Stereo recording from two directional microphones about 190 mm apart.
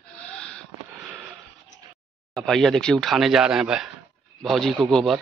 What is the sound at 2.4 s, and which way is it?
Speech, centre (ahead or behind).